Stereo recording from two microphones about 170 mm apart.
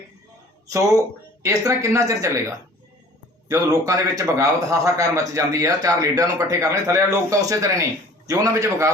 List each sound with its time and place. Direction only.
1.4 s speech: 20° right (ahead or behind)
3.5 s speech: 20° right (ahead or behind)